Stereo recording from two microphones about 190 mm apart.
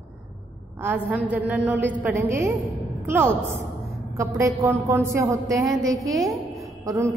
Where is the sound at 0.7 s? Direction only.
10° right (ahead or behind).